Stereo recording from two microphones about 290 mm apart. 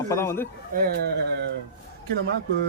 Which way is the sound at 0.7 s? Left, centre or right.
Right.